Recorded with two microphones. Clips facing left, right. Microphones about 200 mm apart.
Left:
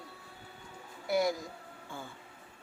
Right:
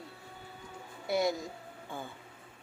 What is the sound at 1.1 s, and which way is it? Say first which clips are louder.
Speech: even; 25° right (ahead or behind).